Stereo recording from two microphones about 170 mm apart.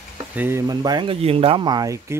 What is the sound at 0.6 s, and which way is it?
Speech, 25° right (ahead or behind).